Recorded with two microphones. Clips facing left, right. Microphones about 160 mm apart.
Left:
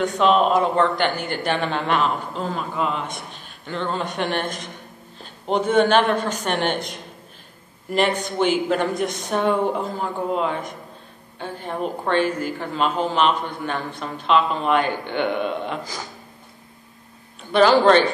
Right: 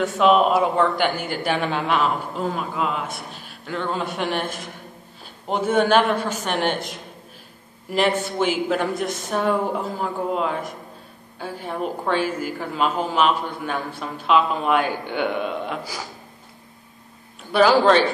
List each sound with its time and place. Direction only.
0.0 s a woman's voice: 5° right (ahead or behind)
17.5 s a woman's voice: 5° right (ahead or behind)